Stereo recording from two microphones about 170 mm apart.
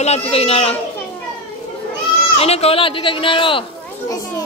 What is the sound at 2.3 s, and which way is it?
Speech, 35° left (ahead or behind).